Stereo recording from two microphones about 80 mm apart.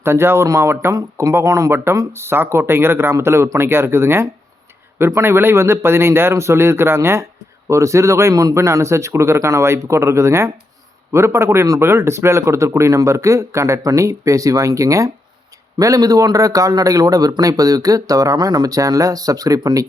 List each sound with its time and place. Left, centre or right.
0.0 s a man's voice: right